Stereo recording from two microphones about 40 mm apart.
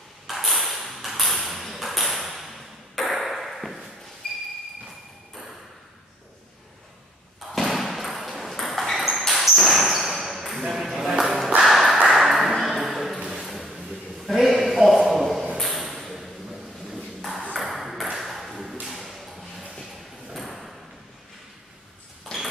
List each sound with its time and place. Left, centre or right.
0.3 s ping: centre
4.2 s a sound: centre
7.5 s a sound: centre
8.3 s ping: centre
10.7 s music: centre
12.1 s ping: centre
13.3 s a sound: centre
17.6 s ping: centre
18.9 s thump: centre
19.7 s ping: centre